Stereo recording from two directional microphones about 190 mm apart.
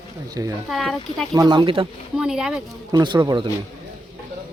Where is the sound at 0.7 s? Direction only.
Centre (ahead or behind).